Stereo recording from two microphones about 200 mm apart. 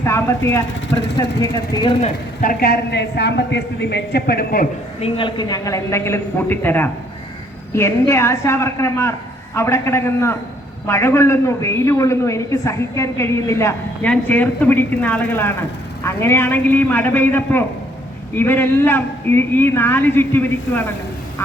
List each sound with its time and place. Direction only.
0.0 s speech: 15° left (ahead or behind)
0.7 s speech: 65° left (ahead or behind)
1.2 s speech: 15° left (ahead or behind)
2.4 s a woman's voice: 45° left (ahead or behind)
4.9 s a man's voice: 25° left (ahead or behind); by 20.8 s 10° left (ahead or behind)